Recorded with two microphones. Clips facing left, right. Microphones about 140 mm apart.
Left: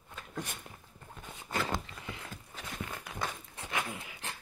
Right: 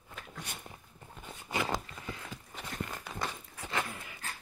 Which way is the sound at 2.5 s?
5° left (ahead or behind).